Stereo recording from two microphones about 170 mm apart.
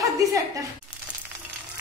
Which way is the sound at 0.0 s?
20° right (ahead or behind).